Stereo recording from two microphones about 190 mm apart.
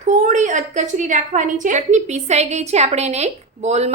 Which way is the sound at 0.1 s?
40° right (ahead or behind).